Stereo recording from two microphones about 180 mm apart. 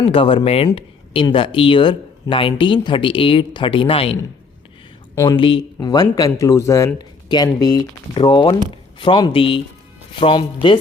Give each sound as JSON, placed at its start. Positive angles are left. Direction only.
{"t": 0.0, "sound": "speech", "side_deg": 30}
{"t": 5.1, "sound": "speech", "side_deg": 20}